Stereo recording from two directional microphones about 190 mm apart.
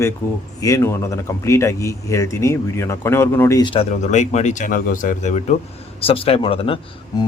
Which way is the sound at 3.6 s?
30° left (ahead or behind).